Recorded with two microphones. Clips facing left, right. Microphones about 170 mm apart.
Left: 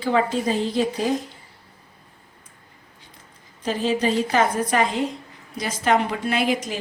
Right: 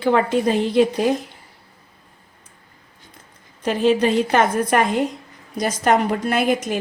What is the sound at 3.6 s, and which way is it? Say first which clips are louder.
A woman's voice: right 5 dB; 60° right (ahead or behind).